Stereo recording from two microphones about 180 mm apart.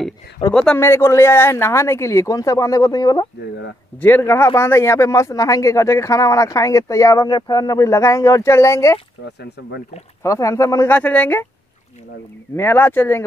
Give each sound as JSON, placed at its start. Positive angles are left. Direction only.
{"t": 0.5, "sound": "speech", "side_deg": 5}
{"t": 9.2, "sound": "speech", "side_deg": 70}
{"t": 10.2, "sound": "speech", "side_deg": 15}
{"t": 12.5, "sound": "speech", "side_deg": 10}